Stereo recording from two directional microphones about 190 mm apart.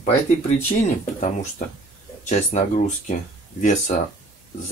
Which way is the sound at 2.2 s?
35° left (ahead or behind).